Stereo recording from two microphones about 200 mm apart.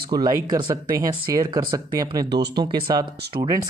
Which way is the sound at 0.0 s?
20° right (ahead or behind).